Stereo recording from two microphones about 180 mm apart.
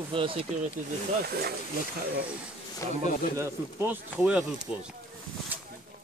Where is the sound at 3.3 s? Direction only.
15° right (ahead or behind).